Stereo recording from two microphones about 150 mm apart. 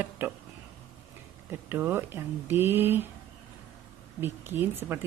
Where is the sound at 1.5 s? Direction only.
15° right (ahead or behind).